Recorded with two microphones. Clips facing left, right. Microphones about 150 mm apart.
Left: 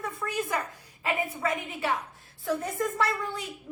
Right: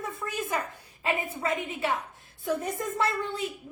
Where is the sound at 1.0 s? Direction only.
25° right (ahead or behind).